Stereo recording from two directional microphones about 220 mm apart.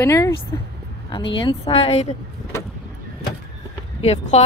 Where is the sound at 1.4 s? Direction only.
25° left (ahead or behind).